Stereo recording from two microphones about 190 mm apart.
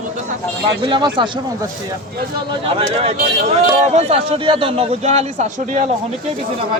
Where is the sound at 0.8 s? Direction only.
25° right (ahead or behind).